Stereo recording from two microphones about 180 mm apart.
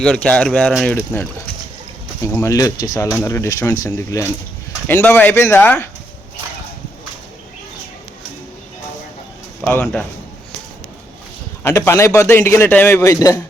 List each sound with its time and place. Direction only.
0.0 s speech: 5° left (ahead or behind)
0.9 s a man's voice: 10° left (ahead or behind)
9.6 s a man's voice: 10° left (ahead or behind)
11.6 s a man's voice: 15° left (ahead or behind)